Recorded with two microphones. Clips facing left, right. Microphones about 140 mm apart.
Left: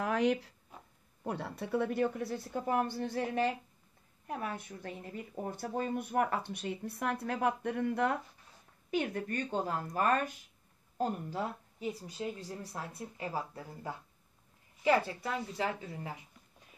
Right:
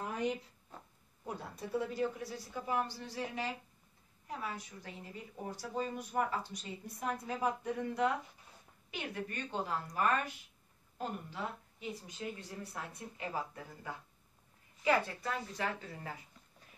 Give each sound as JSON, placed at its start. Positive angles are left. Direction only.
{"t": 0.0, "sound": "a sound", "side_deg": 80}
{"t": 1.2, "sound": "a woman's voice", "side_deg": 65}
{"t": 15.2, "sound": "a woman's voice", "side_deg": 25}